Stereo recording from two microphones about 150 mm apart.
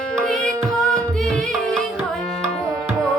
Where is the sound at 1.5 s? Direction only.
5° left (ahead or behind).